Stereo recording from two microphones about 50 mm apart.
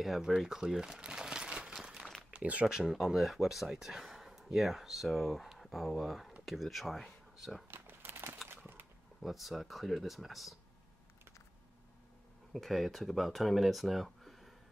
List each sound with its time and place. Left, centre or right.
0.0 s speech: centre
0.4 s crumpling: centre
2.3 s speech: right
2.6 s speech: centre
3.7 s a sound: centre
4.6 s speech: centre
7.7 s crumpling: right
8.5 s a sound: right
9.2 s speech: centre
12.5 s speech: centre